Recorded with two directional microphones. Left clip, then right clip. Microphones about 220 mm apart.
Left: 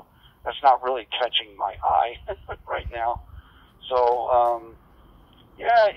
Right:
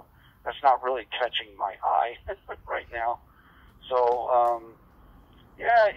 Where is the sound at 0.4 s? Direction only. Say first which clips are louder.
Left 4 dB; 20° left (ahead or behind).